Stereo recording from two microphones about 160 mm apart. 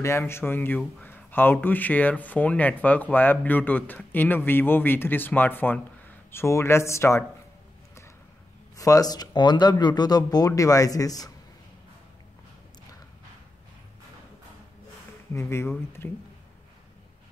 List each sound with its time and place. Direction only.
0.0 s speech: 15° left (ahead or behind)
8.7 s speech: 20° left (ahead or behind)
15.3 s speech: 15° left (ahead or behind)